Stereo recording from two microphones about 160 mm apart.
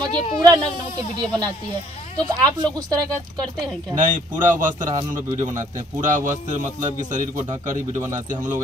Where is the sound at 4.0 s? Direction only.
55° right (ahead or behind).